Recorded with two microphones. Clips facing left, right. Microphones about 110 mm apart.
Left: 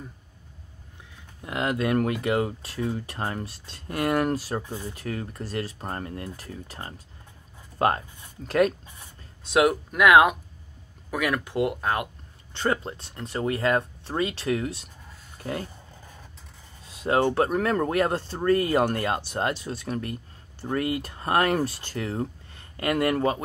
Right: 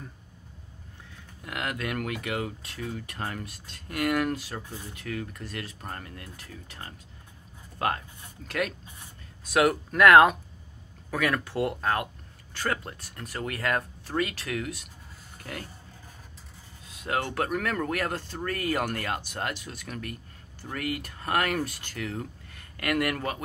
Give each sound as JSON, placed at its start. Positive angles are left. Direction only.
{"t": 1.4, "sound": "speech", "side_deg": 25}
{"t": 8.5, "sound": "speech", "side_deg": 35}
{"t": 9.4, "sound": "speech", "side_deg": 20}
{"t": 17.0, "sound": "speech", "side_deg": 30}